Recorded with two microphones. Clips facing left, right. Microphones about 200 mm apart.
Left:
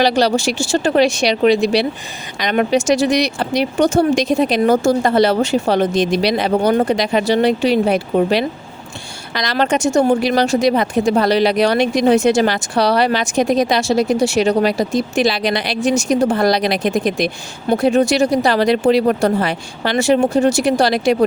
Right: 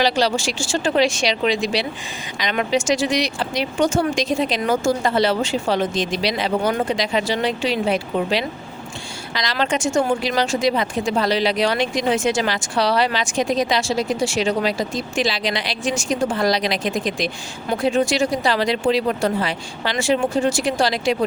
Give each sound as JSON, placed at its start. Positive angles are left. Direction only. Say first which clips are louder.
{"t": 0.1, "sound": "speech", "louder": "left 5 dB", "side_deg": 65}
{"t": 6.6, "sound": "speech", "louder": "left 7 dB", "side_deg": 40}
{"t": 6.9, "sound": "speech", "louder": "left 6 dB", "side_deg": 55}
{"t": 9.9, "sound": "speech", "louder": "left 6 dB", "side_deg": 40}
{"t": 10.2, "sound": "speech", "louder": "left 6 dB", "side_deg": 60}